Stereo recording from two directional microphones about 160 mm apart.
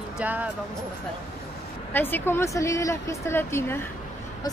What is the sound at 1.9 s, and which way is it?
Speech, 10° left (ahead or behind).